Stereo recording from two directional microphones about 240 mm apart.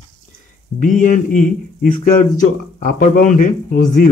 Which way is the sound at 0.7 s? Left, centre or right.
Left.